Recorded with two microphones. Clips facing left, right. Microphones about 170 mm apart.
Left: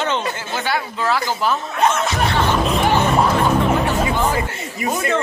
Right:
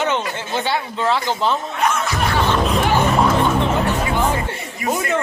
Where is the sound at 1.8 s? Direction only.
25° left (ahead or behind).